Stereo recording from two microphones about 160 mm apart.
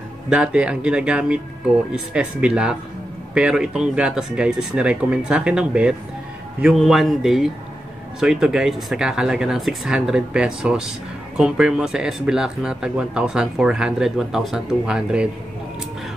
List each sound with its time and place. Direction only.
0.3 s speech: 5° right (ahead or behind)